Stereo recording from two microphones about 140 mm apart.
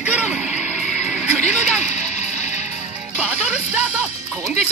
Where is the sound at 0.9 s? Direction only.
10° right (ahead or behind).